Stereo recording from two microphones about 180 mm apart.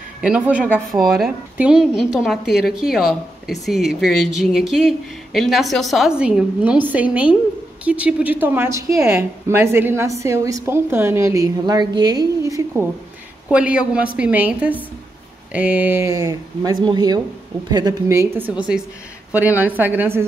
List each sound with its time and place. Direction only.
0.2 s speech: 5° right (ahead or behind)
13.5 s speech: 5° right (ahead or behind)